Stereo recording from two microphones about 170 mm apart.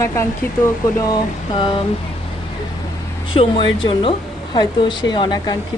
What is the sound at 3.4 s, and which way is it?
Speech, 30° left (ahead or behind).